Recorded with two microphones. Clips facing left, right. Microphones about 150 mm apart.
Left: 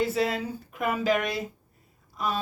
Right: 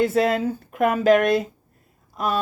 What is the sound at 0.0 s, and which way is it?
Speech, 55° right (ahead or behind).